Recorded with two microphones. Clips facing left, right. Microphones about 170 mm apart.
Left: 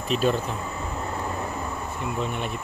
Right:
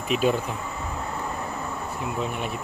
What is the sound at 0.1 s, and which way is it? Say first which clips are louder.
Speech: even; 10° right (ahead or behind).